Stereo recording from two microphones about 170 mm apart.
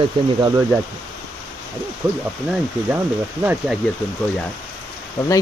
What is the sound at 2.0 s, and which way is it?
Speech, 10° right (ahead or behind).